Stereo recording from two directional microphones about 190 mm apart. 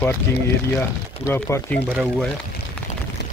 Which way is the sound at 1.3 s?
15° left (ahead or behind).